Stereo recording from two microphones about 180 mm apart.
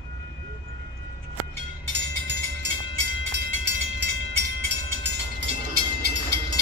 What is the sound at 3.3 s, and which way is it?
Train, 75° right (ahead or behind).